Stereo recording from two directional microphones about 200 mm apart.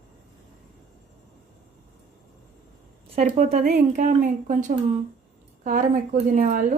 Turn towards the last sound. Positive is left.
turn(degrees=-40)  # may be behind; listen again after turning